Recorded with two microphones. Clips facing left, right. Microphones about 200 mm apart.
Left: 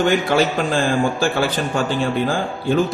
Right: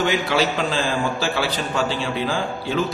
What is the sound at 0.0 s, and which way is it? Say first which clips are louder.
A man's voice: left 4 dB; 50° left (ahead or behind).